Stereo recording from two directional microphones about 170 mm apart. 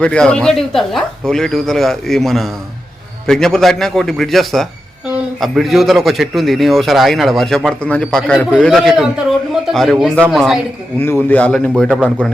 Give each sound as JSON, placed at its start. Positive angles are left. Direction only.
{"t": 0.0, "sound": "a man's voice", "side_deg": 5}
{"t": 11.0, "sound": "a man's voice", "side_deg": 10}